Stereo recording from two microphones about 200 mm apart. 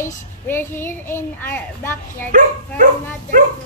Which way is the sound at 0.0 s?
10° left (ahead or behind).